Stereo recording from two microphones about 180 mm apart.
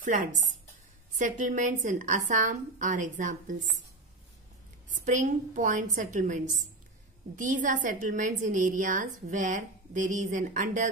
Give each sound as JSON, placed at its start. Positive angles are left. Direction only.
{"t": 0.0, "sound": "a woman's voice", "side_deg": -45}
{"t": 4.9, "sound": "a woman's voice", "side_deg": -45}